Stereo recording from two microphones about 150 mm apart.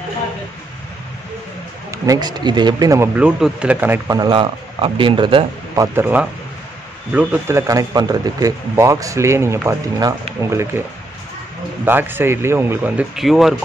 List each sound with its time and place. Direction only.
1.9 s speech: 25° right (ahead or behind)
3.2 s speech: 5° right (ahead or behind)
4.2 s speech: 35° right (ahead or behind)
5.8 s speech: 15° right (ahead or behind)